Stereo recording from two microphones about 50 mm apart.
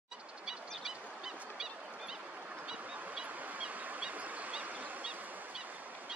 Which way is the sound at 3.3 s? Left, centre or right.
Right.